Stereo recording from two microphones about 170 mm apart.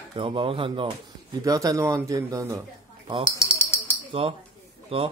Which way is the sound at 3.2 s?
15° left (ahead or behind).